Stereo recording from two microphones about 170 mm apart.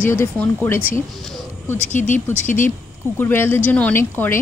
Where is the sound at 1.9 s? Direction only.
45° left (ahead or behind).